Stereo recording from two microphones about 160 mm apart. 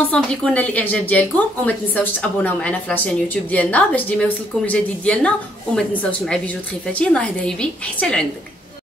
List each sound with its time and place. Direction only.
0.1 s a woman's voice: 5° left (ahead or behind)